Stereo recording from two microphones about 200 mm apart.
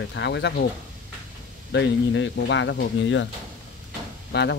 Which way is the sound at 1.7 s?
65° left (ahead or behind).